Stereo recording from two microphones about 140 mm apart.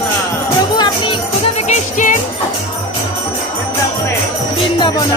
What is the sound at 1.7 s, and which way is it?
Music, 65° left (ahead or behind).